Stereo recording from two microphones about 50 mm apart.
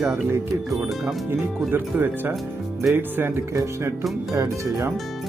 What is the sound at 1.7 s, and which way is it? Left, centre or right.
Speech, right.